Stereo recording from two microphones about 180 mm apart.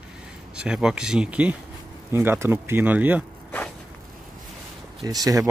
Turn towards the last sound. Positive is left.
turn(degrees=-20)  # may be behind; listen again after turning